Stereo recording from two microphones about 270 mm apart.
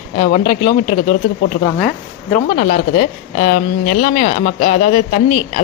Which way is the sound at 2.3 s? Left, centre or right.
Left.